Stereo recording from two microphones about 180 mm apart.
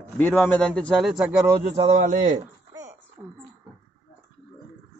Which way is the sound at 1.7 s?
40° right (ahead or behind).